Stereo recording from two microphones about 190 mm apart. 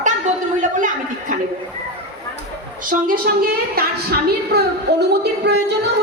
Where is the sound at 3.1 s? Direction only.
50° right (ahead or behind).